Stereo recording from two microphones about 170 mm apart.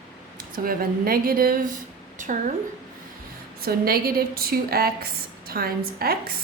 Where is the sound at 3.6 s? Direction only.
60° right (ahead or behind).